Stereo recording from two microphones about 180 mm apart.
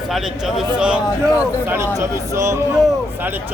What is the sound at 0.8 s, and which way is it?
A man's voice, 5° right (ahead or behind).